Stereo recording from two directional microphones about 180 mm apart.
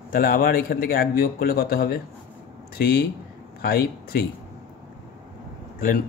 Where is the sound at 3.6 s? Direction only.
60° left (ahead or behind).